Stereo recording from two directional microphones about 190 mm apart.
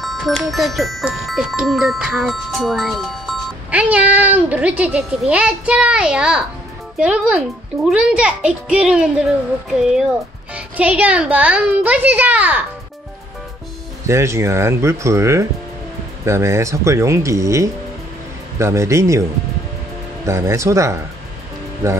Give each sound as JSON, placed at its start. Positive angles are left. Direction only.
{"t": 0.0, "sound": "a woman's voice", "side_deg": 0}
{"t": 14.0, "sound": "a woman's voice", "side_deg": -15}
{"t": 20.2, "sound": "a woman's voice", "side_deg": -15}